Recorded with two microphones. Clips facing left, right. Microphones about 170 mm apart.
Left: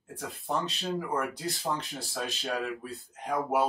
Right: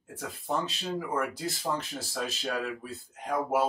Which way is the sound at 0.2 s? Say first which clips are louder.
Even; centre (ahead or behind).